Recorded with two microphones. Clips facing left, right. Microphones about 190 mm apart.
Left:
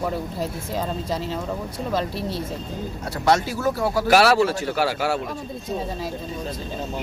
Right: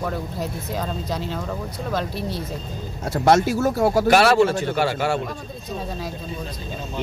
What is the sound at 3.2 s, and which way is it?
Speech, 45° right (ahead or behind).